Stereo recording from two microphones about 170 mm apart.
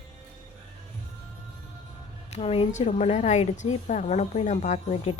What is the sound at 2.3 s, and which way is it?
A woman's voice, 35° left (ahead or behind).